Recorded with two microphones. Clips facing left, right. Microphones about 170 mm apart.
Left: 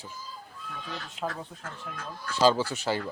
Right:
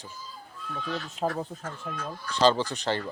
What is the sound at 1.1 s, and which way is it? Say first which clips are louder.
Speech: right 4 dB; 40° right (ahead or behind).